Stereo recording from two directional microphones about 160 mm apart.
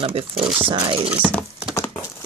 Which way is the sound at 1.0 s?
10° right (ahead or behind).